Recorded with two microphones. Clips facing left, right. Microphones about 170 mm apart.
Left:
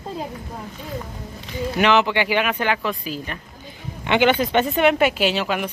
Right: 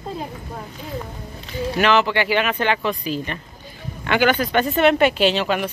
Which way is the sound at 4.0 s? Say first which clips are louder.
Left 1 dB; 20° left (ahead or behind).